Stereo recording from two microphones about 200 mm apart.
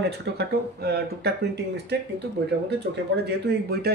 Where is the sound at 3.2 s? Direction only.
55° right (ahead or behind).